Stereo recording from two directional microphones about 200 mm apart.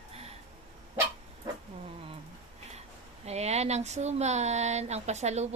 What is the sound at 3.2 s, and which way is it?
A woman's voice, 35° right (ahead or behind).